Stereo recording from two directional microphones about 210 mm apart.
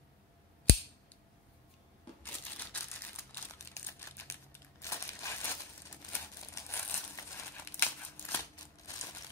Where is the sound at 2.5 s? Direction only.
10° left (ahead or behind).